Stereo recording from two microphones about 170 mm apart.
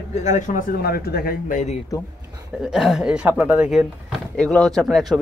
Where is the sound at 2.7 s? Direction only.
5° right (ahead or behind).